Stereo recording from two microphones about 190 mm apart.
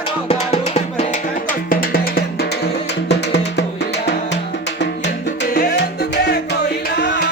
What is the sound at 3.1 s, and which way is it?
Music, 65° left (ahead or behind).